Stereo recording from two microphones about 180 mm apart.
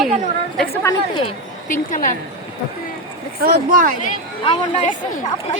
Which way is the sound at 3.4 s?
50° right (ahead or behind).